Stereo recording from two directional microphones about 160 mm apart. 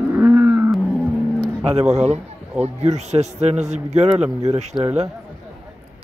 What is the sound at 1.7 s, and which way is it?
A man's voice, 45° right (ahead or behind).